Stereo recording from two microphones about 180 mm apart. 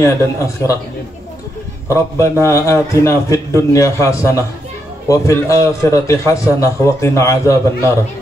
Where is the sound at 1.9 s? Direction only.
15° left (ahead or behind).